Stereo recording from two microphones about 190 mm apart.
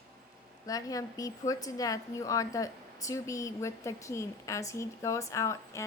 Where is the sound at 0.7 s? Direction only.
20° left (ahead or behind).